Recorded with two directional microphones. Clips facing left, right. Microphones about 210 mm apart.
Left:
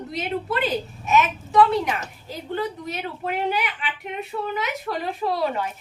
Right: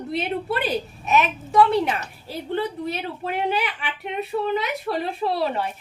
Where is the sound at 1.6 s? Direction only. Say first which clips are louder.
Right 1 dB; 30° right (ahead or behind).